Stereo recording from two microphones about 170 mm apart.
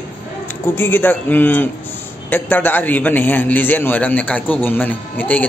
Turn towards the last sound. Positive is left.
turn(degrees=10)  # may be behind; listen again after turning